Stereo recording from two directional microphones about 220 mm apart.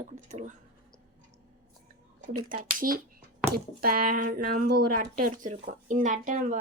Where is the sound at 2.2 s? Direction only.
35° right (ahead or behind).